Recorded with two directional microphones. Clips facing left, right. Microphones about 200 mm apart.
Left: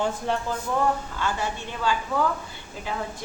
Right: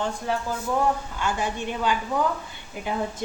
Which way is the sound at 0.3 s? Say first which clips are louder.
Right 2 dB; centre (ahead or behind).